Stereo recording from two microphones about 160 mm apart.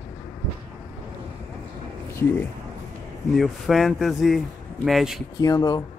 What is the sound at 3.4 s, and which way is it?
Speech, centre (ahead or behind).